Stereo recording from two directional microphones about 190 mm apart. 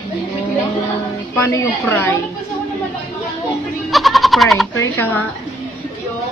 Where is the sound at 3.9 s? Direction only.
Centre (ahead or behind).